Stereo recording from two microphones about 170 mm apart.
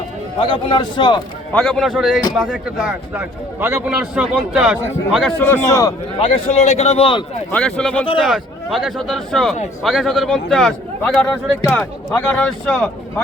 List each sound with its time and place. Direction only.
0.3 s a man's voice: 30° left (ahead or behind)
1.5 s speech: 5° left (ahead or behind)
3.2 s a man's voice: 15° right (ahead or behind)
5.4 s a man's voice: 15° left (ahead or behind)
6.1 s a man's voice: 30° left (ahead or behind)
7.5 s a man's voice: 5° left (ahead or behind)